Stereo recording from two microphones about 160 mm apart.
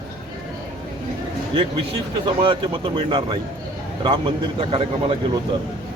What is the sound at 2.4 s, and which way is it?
A man's voice, 35° right (ahead or behind).